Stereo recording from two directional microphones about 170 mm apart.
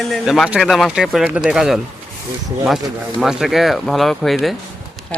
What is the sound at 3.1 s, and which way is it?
A man's voice, 5° right (ahead or behind).